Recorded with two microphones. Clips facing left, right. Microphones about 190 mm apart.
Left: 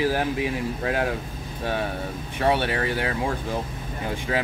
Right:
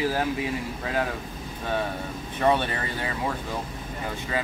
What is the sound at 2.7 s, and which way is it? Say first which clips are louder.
Speech: left 6 dB; 90° left.